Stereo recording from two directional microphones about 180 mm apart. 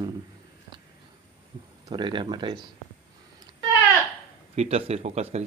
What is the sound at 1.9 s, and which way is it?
Speech, 25° right (ahead or behind).